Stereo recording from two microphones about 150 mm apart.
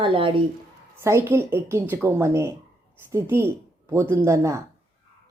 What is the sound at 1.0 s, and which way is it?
Speech, 15° right (ahead or behind).